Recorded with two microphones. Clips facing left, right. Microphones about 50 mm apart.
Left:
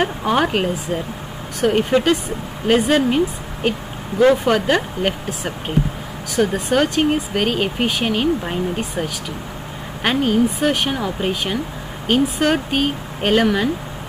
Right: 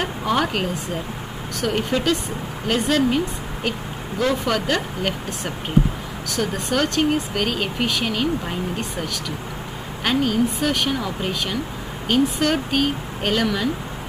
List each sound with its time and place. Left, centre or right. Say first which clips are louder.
0.0 s speech: left 4 dB; centre
6.3 s speech: left 5 dB; centre